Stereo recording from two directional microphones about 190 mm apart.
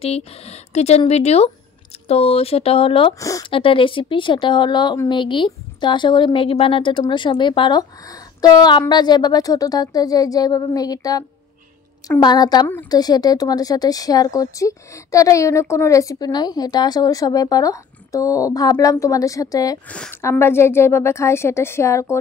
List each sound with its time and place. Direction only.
0.0 s speech: 35° left (ahead or behind)
3.2 s a woman's voice: 15° left (ahead or behind)
3.5 s a woman's voice: 30° left (ahead or behind)